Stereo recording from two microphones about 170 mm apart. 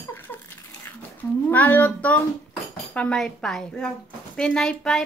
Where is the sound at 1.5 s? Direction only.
10° left (ahead or behind).